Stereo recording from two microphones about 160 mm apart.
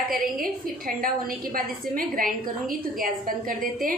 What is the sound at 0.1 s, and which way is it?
Speech, 65° right (ahead or behind).